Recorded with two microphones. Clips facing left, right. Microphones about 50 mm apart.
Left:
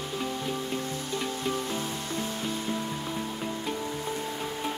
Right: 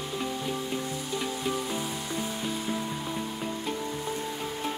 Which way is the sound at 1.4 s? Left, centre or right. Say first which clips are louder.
Even; centre.